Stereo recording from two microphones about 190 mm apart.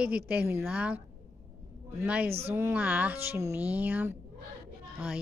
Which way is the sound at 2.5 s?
10° right (ahead or behind).